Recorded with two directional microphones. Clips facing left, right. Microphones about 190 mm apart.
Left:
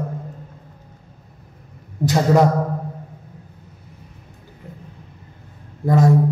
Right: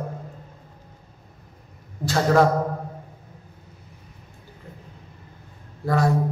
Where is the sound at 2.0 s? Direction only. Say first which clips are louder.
Left 3 dB; 20° left (ahead or behind).